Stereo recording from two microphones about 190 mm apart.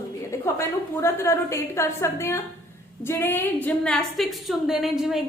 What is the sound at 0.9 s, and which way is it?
A woman's voice, 15° left (ahead or behind).